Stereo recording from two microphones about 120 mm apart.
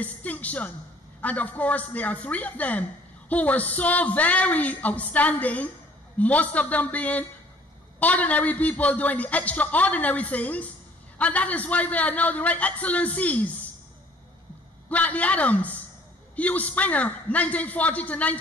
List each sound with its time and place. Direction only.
0.0 s a woman's voice: 10° left (ahead or behind)
14.9 s a man's voice: 10° left (ahead or behind)